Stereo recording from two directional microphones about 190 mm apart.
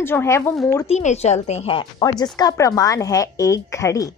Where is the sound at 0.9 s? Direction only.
35° left (ahead or behind).